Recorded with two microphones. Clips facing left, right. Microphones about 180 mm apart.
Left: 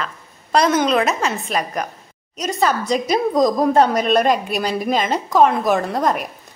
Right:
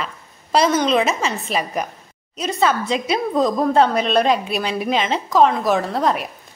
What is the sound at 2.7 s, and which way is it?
Speech, 40° left (ahead or behind).